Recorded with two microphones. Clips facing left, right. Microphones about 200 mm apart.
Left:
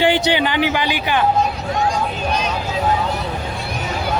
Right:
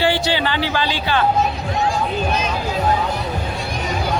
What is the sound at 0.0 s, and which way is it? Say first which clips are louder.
A man's voice: left 2 dB; 20° left (ahead or behind).